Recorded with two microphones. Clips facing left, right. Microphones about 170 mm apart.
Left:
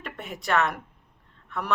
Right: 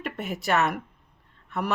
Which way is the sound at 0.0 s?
5° right (ahead or behind).